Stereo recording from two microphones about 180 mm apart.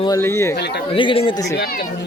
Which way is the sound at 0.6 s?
65° left (ahead or behind).